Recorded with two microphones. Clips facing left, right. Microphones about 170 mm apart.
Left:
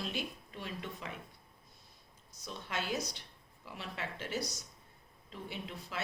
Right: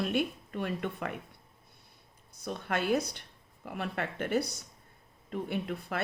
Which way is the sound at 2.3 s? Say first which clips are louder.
Right 7 dB; 55° right (ahead or behind).